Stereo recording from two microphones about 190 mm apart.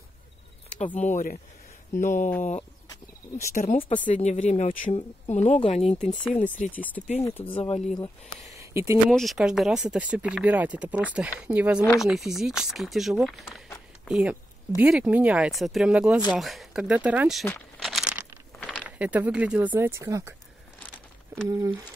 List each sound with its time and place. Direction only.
0.7 s speech: 35° left (ahead or behind)
3.3 s speech: 40° left (ahead or behind)
6.7 s speech: 10° left (ahead or behind)
7.5 s speech: 30° left (ahead or behind)
8.5 s a sound: 15° right (ahead or behind)
9.1 s speech: centre (ahead or behind)
17.5 s a sound: 5° left (ahead or behind)
18.9 s speech: 5° right (ahead or behind)
21.5 s speech: 15° right (ahead or behind)